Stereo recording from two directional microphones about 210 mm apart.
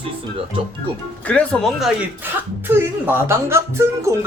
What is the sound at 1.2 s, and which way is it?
Speech, 5° left (ahead or behind).